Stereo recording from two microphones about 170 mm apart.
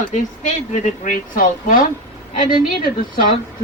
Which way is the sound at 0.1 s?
45° left (ahead or behind).